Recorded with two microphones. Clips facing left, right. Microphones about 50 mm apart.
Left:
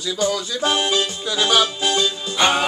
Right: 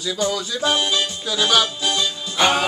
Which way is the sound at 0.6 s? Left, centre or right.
Left.